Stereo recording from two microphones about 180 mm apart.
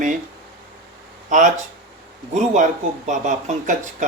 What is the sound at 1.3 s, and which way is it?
Speech, 45° right (ahead or behind).